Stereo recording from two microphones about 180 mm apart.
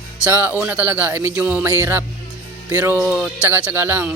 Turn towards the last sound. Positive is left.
turn(degrees=-10)  # may be behind; listen again after turning